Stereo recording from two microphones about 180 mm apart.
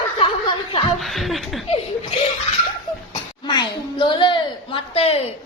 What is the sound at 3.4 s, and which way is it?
A woman's voice, 25° left (ahead or behind).